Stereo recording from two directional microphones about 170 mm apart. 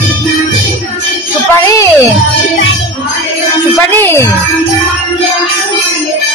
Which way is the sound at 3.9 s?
15° left (ahead or behind).